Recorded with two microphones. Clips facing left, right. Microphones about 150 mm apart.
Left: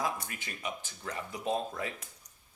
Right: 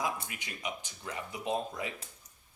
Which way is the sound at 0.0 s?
15° right (ahead or behind).